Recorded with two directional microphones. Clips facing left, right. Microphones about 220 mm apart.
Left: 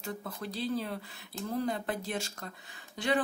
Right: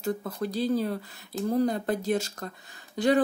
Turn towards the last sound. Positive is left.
turn(degrees=-40)  # may be behind; listen again after turning